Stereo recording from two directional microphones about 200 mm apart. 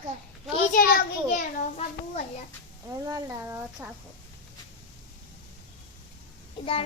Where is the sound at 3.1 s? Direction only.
15° right (ahead or behind).